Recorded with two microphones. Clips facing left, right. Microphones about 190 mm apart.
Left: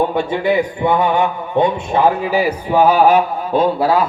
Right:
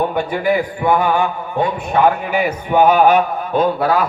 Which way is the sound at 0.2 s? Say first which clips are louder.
Left 1 dB; 25° left (ahead or behind).